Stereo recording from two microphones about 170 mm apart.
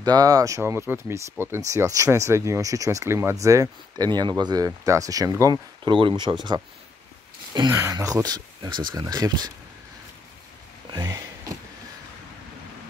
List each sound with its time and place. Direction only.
0.0 s speech: 20° right (ahead or behind)
7.7 s speech: 15° right (ahead or behind)
10.9 s a sound: 20° right (ahead or behind)